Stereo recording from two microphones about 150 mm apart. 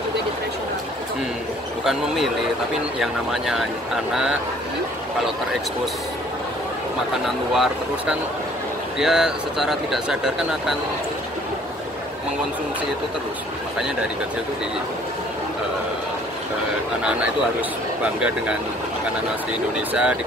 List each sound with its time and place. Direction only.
1.9 s speech: centre (ahead or behind)
7.5 s speech: centre (ahead or behind)
17.0 s speech: 10° right (ahead or behind)
19.9 s speech: 10° right (ahead or behind)